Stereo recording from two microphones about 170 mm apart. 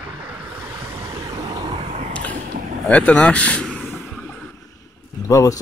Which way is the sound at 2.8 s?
5° left (ahead or behind).